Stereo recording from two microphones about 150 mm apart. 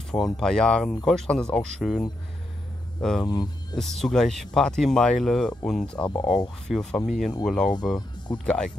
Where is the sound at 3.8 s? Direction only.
Centre (ahead or behind).